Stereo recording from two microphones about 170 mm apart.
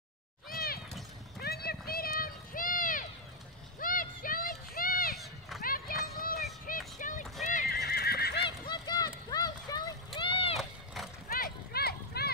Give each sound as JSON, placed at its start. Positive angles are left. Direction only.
{"t": 0.5, "sound": "cat", "side_deg": 60}
{"t": 1.4, "sound": "a sound", "side_deg": 65}
{"t": 5.6, "sound": "run", "side_deg": 60}
{"t": 7.4, "sound": "horse", "side_deg": 55}
{"t": 8.5, "sound": "run", "side_deg": 25}
{"t": 11.2, "sound": "a sound", "side_deg": 60}